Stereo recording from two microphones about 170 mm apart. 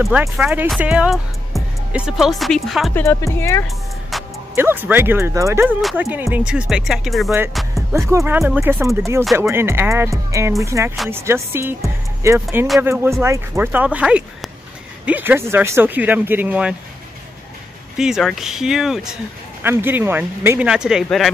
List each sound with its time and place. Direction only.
0.4 s speech: 5° right (ahead or behind)
2.9 s speech: 15° left (ahead or behind)
4.1 s music: centre (ahead or behind)
4.6 s speech: 10° right (ahead or behind)
5.8 s speech: centre (ahead or behind)
6.0 s speech: 15° right (ahead or behind)
7.9 s speech: 15° right (ahead or behind)
17.9 s speech: 5° right (ahead or behind)
19.6 s speech: 15° right (ahead or behind)